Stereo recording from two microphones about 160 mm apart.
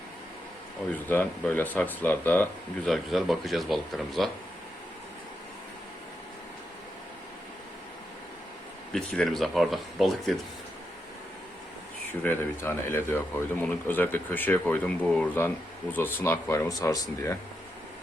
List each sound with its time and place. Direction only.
0.9 s speech: 15° left (ahead or behind)
2.9 s speech: centre (ahead or behind)
8.9 s speech: 5° left (ahead or behind)
12.2 s speech: 15° left (ahead or behind)